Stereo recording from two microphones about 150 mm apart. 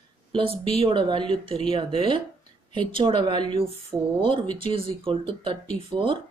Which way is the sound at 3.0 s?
35° right (ahead or behind).